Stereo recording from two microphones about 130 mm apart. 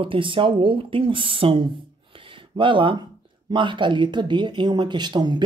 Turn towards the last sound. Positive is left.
turn(degrees=-35)  # may be behind; listen again after turning